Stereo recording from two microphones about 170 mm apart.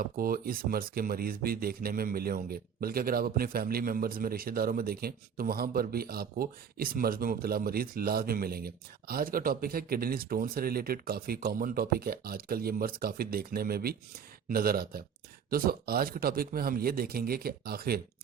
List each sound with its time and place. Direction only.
0.0 s speech: 60° right (ahead or behind)